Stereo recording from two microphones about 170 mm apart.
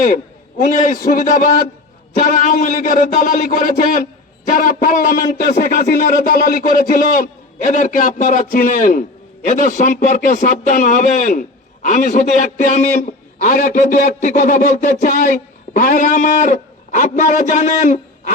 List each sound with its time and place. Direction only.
0.6 s speech: 50° left (ahead or behind)